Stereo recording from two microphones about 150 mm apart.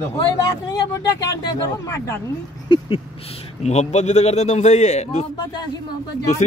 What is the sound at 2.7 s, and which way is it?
Speech, 40° left (ahead or behind).